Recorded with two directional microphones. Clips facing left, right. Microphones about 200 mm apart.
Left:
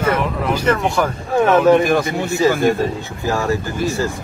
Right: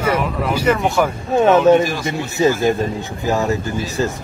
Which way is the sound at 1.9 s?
55° left (ahead or behind).